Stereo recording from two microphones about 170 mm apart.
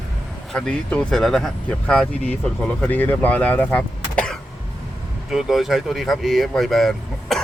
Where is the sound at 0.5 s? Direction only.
5° left (ahead or behind).